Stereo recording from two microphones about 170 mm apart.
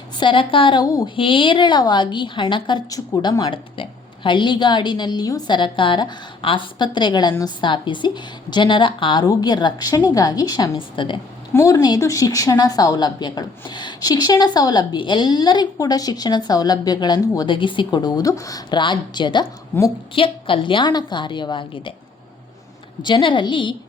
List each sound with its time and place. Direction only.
0.2 s a woman's voice: 30° left (ahead or behind)
11.5 s a woman's voice: 20° left (ahead or behind)
19.7 s a woman's voice: 10° left (ahead or behind)
20.1 s a woman's voice: 30° left (ahead or behind)
23.0 s a woman's voice: 30° left (ahead or behind)